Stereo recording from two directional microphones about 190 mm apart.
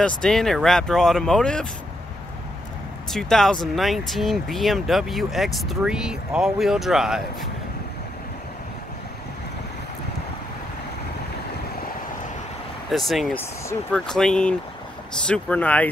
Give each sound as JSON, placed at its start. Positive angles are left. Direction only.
{"t": 0.0, "sound": "speech", "side_deg": 5}
{"t": 3.1, "sound": "speech", "side_deg": 0}
{"t": 12.9, "sound": "speech", "side_deg": 0}